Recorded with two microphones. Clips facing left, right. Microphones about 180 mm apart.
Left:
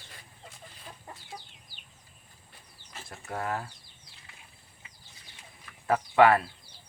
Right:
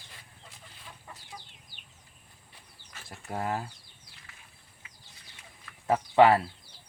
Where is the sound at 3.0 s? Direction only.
25° right (ahead or behind).